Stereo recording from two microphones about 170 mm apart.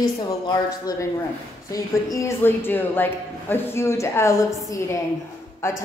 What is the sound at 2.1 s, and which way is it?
A woman's voice, 15° left (ahead or behind).